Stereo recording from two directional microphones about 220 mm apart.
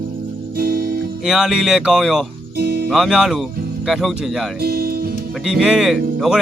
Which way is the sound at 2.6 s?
45° right (ahead or behind).